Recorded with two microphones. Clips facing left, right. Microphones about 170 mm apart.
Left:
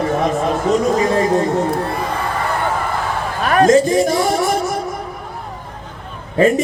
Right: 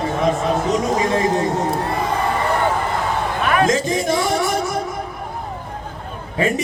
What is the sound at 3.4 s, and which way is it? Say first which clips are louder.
A man's voice: left 7 dB; 40° left (ahead or behind).